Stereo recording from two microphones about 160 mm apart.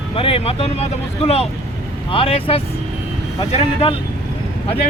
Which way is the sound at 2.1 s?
35° left (ahead or behind).